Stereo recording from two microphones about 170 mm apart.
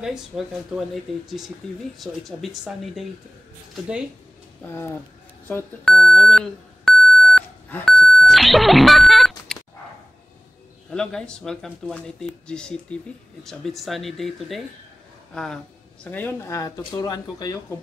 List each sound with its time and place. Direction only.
0.0 s speech: 5° right (ahead or behind)
4.6 s speech: 15° left (ahead or behind)
5.9 s beep: 5° left (ahead or behind)
10.9 s speech: 5° left (ahead or behind); by 17.6 s 20° left (ahead or behind)